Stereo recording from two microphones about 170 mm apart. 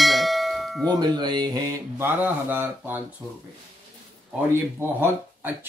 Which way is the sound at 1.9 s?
10° right (ahead or behind).